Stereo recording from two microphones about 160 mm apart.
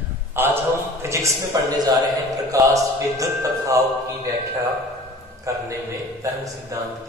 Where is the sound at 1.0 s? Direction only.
20° right (ahead or behind).